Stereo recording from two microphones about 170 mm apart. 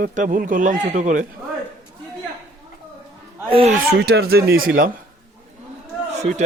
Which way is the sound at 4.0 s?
70° right (ahead or behind).